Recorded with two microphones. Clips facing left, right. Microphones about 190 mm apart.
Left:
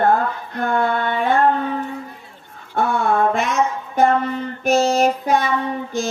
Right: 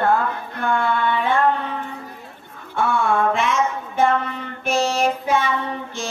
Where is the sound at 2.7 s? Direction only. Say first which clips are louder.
Left 1 dB; 40° left (ahead or behind).